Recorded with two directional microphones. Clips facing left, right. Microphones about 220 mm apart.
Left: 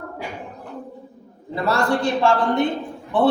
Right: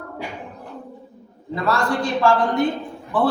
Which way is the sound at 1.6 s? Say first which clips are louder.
Left 2 dB; 25° left (ahead or behind).